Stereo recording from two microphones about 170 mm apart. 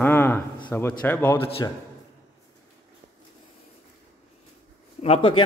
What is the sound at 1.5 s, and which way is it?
Speech, 35° left (ahead or behind).